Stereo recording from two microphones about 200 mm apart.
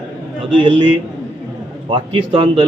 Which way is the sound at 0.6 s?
25° right (ahead or behind).